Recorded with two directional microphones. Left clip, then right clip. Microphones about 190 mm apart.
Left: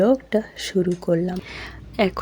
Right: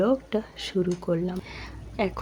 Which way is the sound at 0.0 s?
15° left (ahead or behind).